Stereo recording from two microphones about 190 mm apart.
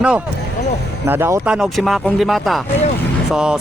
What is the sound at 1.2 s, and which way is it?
Speech, 10° right (ahead or behind).